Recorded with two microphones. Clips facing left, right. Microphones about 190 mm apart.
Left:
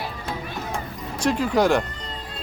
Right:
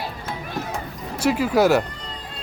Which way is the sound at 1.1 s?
5° right (ahead or behind).